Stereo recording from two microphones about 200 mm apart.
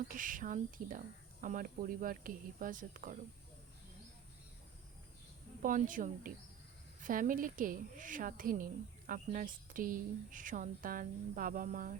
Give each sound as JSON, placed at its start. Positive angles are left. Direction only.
{"t": 0.1, "sound": "a woman's voice", "side_deg": -40}
{"t": 5.6, "sound": "a woman's voice", "side_deg": -40}